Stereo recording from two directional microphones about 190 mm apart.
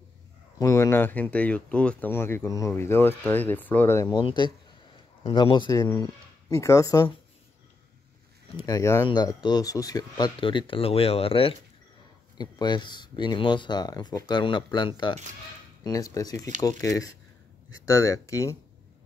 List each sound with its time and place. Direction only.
0.6 s speech: 15° left (ahead or behind)
8.5 s speech: 20° left (ahead or behind)